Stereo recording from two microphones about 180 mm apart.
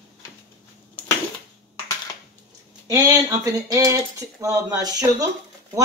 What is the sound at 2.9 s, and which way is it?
Cutlery, 15° right (ahead or behind).